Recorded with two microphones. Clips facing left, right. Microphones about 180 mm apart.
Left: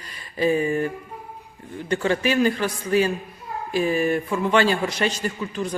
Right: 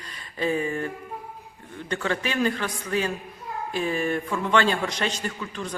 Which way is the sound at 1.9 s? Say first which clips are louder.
Left 6 dB; 10° left (ahead or behind).